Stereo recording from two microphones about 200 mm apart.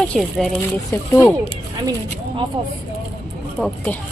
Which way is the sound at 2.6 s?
25° right (ahead or behind).